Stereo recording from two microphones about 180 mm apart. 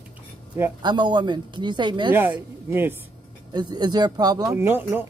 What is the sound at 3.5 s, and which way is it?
Speech, 25° right (ahead or behind).